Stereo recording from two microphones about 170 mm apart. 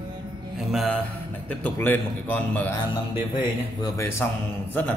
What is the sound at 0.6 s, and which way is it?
Mantra, centre (ahead or behind).